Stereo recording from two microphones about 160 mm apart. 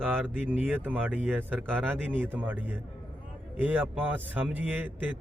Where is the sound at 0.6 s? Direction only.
10° right (ahead or behind).